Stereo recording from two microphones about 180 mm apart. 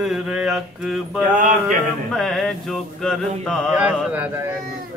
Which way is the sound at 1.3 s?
45° right (ahead or behind).